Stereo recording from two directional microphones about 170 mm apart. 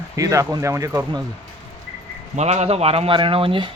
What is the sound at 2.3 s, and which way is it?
Speech, 40° right (ahead or behind).